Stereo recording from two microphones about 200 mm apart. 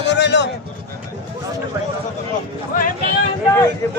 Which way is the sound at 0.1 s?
60° left (ahead or behind).